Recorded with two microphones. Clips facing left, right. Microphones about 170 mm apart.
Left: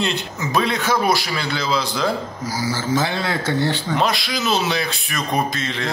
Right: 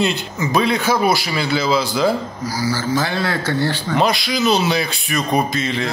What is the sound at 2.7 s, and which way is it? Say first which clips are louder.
Speech: even; 20° left (ahead or behind).